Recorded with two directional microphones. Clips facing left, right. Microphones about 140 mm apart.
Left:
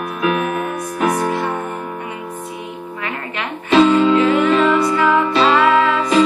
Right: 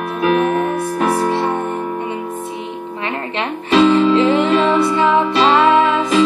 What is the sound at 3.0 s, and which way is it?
Music, 25° right (ahead or behind).